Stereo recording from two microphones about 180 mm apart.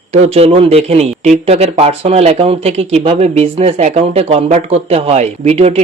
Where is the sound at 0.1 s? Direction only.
35° right (ahead or behind).